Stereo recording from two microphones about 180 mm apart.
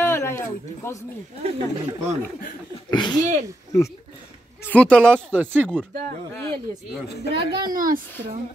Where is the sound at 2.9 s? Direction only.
25° left (ahead or behind).